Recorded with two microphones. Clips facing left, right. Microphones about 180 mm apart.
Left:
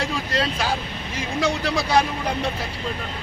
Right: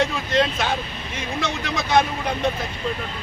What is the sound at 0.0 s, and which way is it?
Vehicle, 35° left (ahead or behind).